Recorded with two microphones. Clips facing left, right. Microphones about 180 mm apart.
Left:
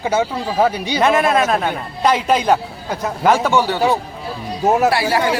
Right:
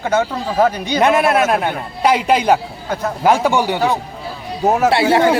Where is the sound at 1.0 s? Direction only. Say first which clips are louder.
Right 1 dB; 10° right (ahead or behind).